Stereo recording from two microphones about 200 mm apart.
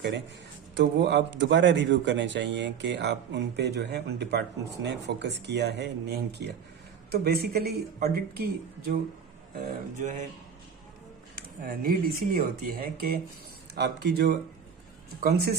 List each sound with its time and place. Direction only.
0.7 s speech: 60° right (ahead or behind)
9.6 s mantra: 40° right (ahead or behind)
11.3 s speech: 45° right (ahead or behind)